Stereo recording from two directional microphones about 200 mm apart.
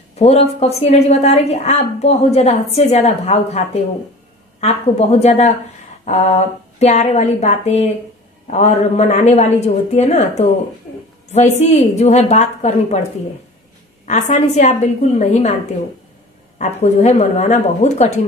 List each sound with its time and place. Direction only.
0.1 s a woman's voice: 30° left (ahead or behind)
14.0 s a woman's voice: 35° left (ahead or behind)
16.5 s a woman's voice: 35° left (ahead or behind)